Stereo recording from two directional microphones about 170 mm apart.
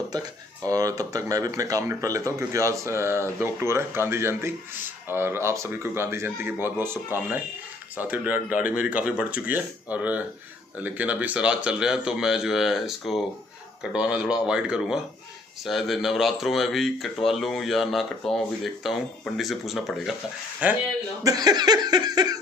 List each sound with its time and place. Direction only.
0.7 s speech: 20° right (ahead or behind)
21.2 s laughter: 20° right (ahead or behind)